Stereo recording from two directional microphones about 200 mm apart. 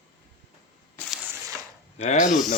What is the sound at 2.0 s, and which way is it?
Speech, 35° left (ahead or behind).